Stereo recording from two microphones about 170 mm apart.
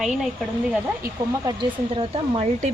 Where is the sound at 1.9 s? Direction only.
35° right (ahead or behind).